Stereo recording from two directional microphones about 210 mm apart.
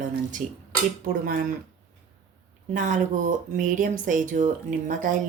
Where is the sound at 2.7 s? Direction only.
35° right (ahead or behind).